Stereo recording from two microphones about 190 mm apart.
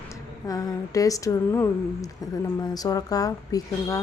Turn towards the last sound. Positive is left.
turn(degrees=20)  # may be behind; listen again after turning